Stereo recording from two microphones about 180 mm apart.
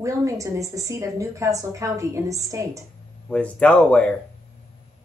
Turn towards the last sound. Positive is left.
turn(degrees=5)  # may be behind; listen again after turning